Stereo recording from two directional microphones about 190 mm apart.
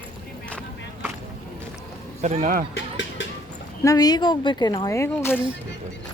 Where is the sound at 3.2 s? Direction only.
75° left (ahead or behind).